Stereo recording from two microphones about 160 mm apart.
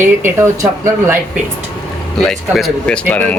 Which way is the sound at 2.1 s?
Centre (ahead or behind).